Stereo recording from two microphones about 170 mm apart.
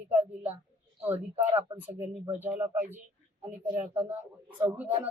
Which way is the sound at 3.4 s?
40° right (ahead or behind).